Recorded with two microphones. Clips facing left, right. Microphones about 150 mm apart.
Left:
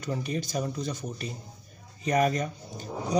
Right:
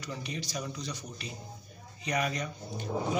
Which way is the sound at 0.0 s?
45° left (ahead or behind).